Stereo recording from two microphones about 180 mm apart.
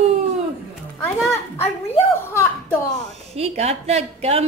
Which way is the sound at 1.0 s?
15° left (ahead or behind).